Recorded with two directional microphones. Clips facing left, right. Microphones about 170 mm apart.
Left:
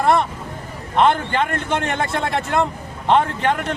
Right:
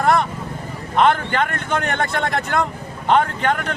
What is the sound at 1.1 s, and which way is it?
Speech, 30° left (ahead or behind).